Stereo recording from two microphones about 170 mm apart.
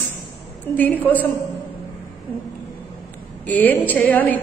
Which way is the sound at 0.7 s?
10° left (ahead or behind).